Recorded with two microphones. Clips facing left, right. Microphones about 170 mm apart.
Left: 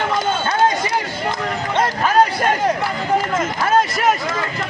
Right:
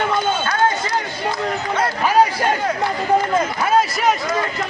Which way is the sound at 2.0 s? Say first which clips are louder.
Right 1 dB; 10° right (ahead or behind).